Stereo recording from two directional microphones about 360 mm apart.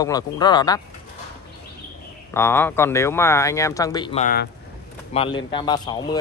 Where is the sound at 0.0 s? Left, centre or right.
Centre.